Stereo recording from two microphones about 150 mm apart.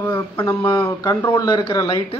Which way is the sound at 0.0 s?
15° left (ahead or behind).